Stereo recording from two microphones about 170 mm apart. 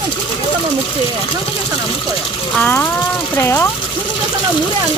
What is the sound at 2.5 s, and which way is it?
Speech, 10° left (ahead or behind).